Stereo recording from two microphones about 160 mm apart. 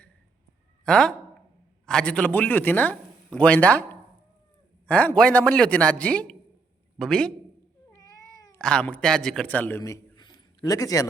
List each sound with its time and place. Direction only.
0.9 s a man's voice: 5° left (ahead or behind)
7.9 s cat: 25° left (ahead or behind)
8.5 s a man's voice: 5° left (ahead or behind); by 11.1 s 20° left (ahead or behind)